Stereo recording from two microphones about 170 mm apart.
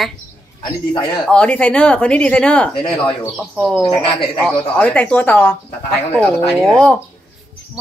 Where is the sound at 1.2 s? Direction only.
5° left (ahead or behind).